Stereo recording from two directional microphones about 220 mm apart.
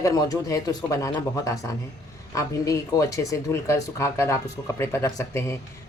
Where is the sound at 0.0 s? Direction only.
15° left (ahead or behind).